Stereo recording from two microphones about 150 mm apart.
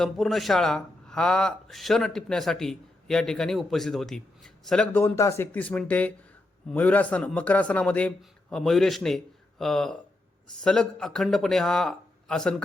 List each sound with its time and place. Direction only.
0.0 s speech: centre (ahead or behind)